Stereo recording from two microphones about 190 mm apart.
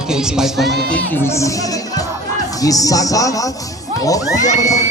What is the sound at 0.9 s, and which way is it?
Music, 10° left (ahead or behind).